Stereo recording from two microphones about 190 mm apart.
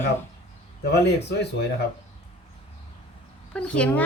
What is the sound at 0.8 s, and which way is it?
Speech, 60° left (ahead or behind).